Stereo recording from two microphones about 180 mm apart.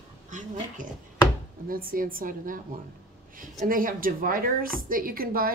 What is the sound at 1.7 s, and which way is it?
Speech, 50° right (ahead or behind).